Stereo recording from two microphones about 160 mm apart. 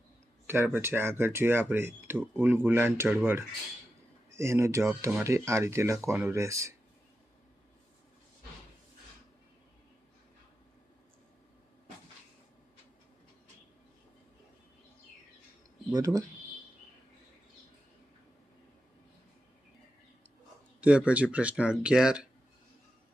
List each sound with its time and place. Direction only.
0.4 s speech: 15° right (ahead or behind)
4.3 s speech: 15° right (ahead or behind)
15.9 s speech: 20° right (ahead or behind)
20.8 s speech: 10° right (ahead or behind)